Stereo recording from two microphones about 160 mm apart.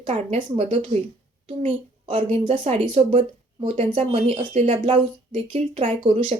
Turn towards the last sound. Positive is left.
turn(degrees=-40)  # may be behind; listen again after turning